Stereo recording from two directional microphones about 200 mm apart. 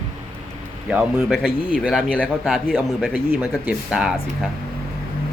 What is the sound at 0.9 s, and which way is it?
Speech, centre (ahead or behind).